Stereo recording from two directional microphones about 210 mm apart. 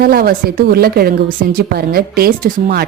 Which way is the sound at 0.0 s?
45° right (ahead or behind).